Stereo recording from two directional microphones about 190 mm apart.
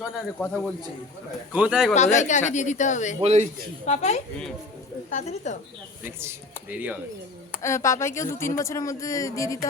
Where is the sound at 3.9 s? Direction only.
35° left (ahead or behind).